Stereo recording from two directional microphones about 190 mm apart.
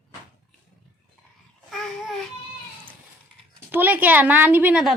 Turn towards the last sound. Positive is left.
turn(degrees=-5)  # may be behind; listen again after turning